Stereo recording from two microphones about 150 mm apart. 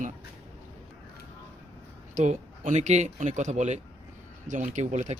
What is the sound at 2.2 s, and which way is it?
A man's voice, 55° right (ahead or behind).